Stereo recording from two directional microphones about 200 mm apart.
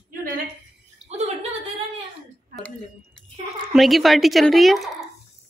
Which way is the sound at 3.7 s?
Centre (ahead or behind).